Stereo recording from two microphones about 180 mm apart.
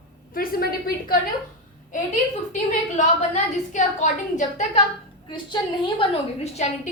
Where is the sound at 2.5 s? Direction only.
40° left (ahead or behind).